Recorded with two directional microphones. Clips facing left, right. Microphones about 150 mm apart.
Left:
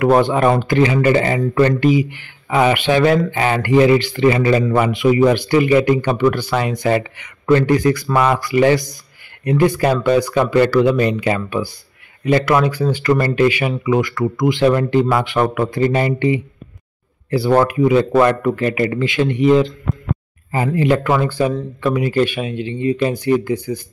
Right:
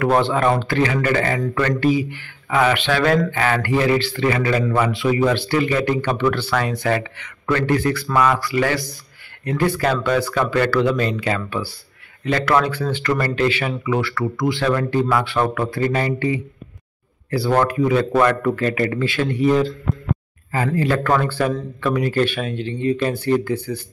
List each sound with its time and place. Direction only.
0.0 s speech: 15° left (ahead or behind)